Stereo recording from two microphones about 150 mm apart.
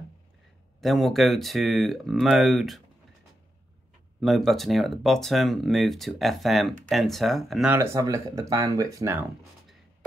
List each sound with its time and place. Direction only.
0.7 s speech: centre (ahead or behind)
4.2 s speech: centre (ahead or behind)
7.7 s speech: 20° right (ahead or behind)